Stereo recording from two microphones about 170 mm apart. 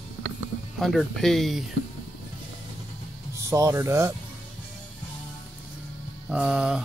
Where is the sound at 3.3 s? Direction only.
15° right (ahead or behind).